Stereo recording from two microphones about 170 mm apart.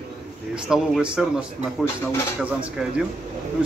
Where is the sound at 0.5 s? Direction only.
5° right (ahead or behind).